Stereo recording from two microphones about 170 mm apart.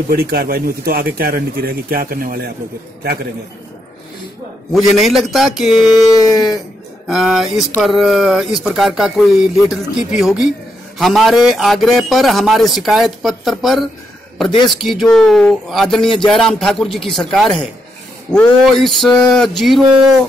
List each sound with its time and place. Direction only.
0.1 s speech: 65° right (ahead or behind)
4.7 s a man's voice: centre (ahead or behind)